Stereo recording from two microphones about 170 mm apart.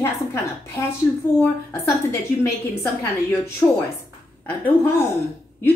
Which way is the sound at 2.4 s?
15° left (ahead or behind).